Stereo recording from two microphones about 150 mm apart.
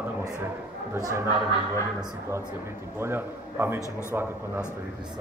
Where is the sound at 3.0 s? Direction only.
15° right (ahead or behind).